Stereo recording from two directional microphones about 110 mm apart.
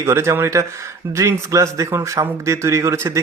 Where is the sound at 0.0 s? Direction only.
25° right (ahead or behind).